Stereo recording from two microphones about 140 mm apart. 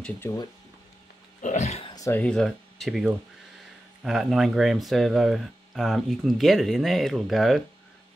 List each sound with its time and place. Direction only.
0.2 s speech: 20° left (ahead or behind)
1.4 s speech: 55° left (ahead or behind)
2.0 s a sound: 20° left (ahead or behind)
2.2 s speech: 5° left (ahead or behind)